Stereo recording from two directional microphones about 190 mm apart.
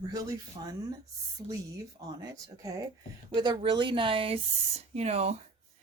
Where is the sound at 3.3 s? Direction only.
25° right (ahead or behind).